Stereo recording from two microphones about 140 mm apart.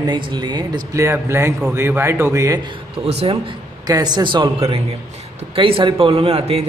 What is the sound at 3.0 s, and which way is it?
Speech, 45° right (ahead or behind).